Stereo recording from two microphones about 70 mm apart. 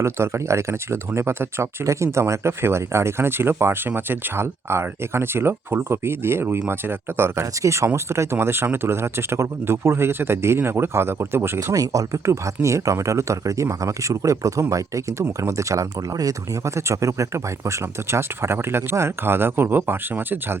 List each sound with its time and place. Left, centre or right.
0.0 s speech: right
7.6 s speech: right
11.7 s speech: right